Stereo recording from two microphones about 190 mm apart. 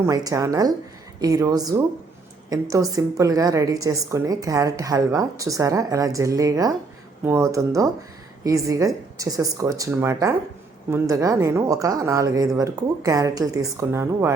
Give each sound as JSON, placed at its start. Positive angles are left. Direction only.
{"t": 0.0, "sound": "a woman's voice", "side_deg": -20}